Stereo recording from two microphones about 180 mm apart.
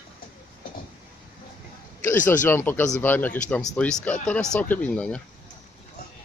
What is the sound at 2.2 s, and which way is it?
Speech, 10° left (ahead or behind).